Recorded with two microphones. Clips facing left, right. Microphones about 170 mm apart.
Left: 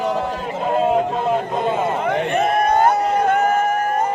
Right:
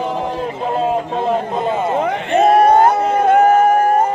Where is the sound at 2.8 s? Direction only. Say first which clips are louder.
Right 3 dB; 50° right (ahead or behind).